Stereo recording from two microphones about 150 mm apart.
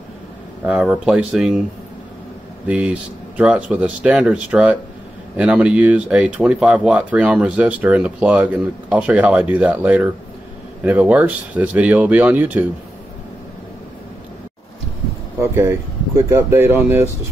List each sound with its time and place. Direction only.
0.7 s speech: 5° right (ahead or behind)
2.7 s speech: 10° right (ahead or behind)
15.4 s speech: 15° right (ahead or behind)